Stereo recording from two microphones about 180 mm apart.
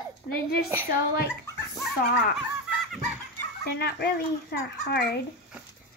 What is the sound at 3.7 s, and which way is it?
Speech, 65° left (ahead or behind).